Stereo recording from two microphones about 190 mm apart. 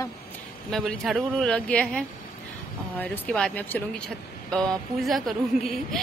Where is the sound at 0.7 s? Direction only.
Centre (ahead or behind).